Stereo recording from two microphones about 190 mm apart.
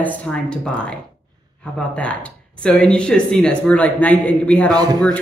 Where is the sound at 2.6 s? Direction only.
5° left (ahead or behind).